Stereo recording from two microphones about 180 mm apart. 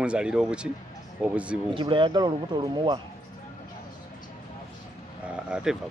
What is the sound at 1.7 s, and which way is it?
Speech, 25° right (ahead or behind).